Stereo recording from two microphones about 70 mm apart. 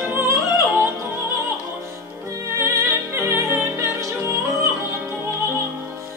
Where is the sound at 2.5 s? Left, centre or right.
Right.